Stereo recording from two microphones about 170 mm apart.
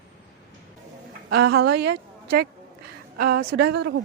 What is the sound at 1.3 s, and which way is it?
A woman's voice, 70° right (ahead or behind).